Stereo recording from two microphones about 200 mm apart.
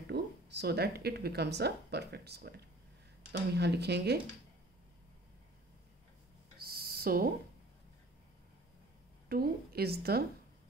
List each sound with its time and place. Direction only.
0.1 s speech: 55° right (ahead or behind)
6.6 s a sound: 50° right (ahead or behind)
9.3 s a woman's voice: 50° right (ahead or behind)